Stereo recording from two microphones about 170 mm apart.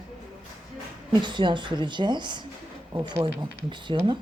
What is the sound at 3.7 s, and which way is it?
Speech, 30° right (ahead or behind).